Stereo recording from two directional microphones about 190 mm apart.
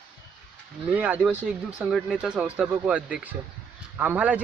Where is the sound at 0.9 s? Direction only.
5° right (ahead or behind).